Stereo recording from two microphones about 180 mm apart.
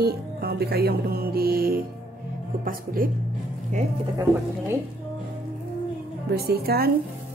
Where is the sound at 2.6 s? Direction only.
50° right (ahead or behind).